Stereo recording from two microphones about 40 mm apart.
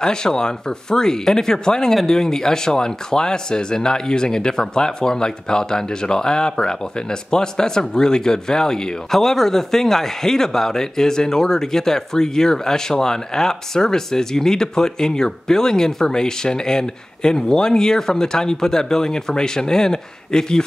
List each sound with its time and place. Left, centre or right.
0.0 s speech: centre